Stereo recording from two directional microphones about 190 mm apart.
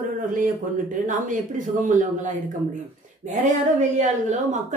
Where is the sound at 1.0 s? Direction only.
45° right (ahead or behind).